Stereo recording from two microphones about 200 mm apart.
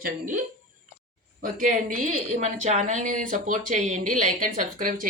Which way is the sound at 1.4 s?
40° right (ahead or behind).